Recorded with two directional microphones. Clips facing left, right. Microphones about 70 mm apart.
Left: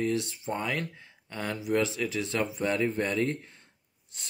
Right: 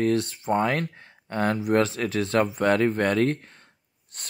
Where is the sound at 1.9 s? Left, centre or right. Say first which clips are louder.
Right 7 dB; right.